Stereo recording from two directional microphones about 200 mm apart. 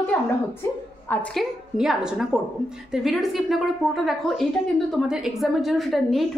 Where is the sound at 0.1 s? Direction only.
10° left (ahead or behind).